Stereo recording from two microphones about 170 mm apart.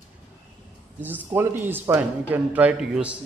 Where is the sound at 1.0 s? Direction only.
10° right (ahead or behind).